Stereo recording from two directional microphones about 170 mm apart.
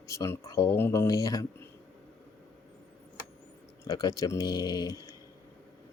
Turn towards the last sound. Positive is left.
turn(degrees=20)  # may be behind; listen again after turning